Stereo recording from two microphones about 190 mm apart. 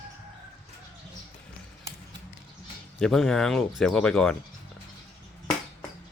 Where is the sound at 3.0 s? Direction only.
Centre (ahead or behind).